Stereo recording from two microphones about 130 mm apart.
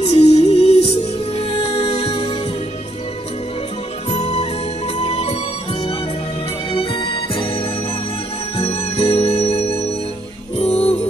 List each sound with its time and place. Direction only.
0.0 s music: 55° left (ahead or behind)
4.1 s music: 55° left (ahead or behind)
6.7 s music: 45° left (ahead or behind)